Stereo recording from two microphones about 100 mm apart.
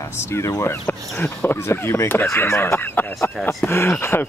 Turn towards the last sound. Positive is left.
turn(degrees=20)  # may be behind; listen again after turning